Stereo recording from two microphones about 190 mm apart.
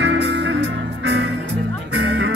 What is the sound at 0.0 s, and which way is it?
Music, 65° right (ahead or behind).